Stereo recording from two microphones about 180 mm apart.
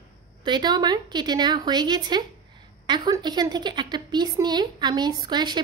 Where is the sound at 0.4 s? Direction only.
25° right (ahead or behind).